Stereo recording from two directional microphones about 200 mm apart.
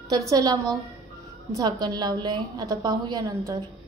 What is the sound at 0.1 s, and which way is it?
A woman's voice, 20° right (ahead or behind).